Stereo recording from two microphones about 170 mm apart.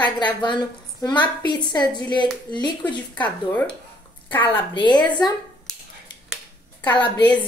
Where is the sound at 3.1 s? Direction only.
10° left (ahead or behind).